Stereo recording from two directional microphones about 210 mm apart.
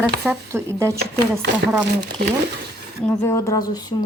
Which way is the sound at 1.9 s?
50° right (ahead or behind).